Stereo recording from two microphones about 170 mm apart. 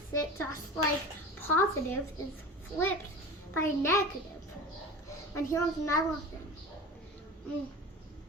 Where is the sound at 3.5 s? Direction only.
15° left (ahead or behind).